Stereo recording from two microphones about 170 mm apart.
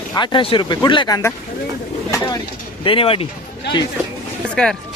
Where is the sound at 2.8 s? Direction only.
30° left (ahead or behind).